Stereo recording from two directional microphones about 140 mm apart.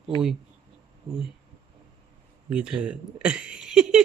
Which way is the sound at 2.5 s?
5° right (ahead or behind).